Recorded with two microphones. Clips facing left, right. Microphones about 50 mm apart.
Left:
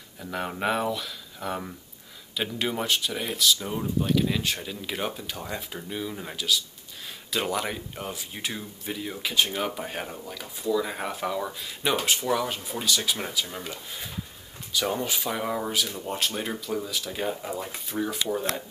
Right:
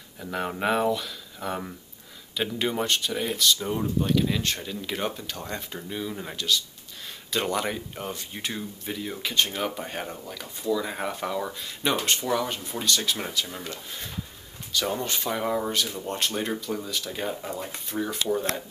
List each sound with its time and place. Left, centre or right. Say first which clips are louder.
0.2 s speech: right 1 dB; centre